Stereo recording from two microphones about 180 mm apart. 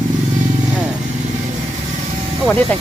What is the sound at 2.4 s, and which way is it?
Speech, 5° left (ahead or behind).